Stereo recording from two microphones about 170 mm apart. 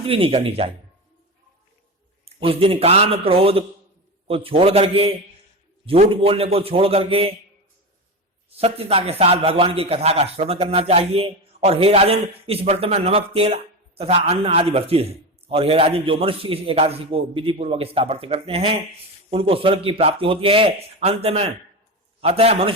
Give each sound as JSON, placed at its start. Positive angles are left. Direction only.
{"t": 0.0, "sound": "a man's voice", "side_deg": -35}
{"t": 2.2, "sound": "a man's voice", "side_deg": -35}
{"t": 8.5, "sound": "a man's voice", "side_deg": -35}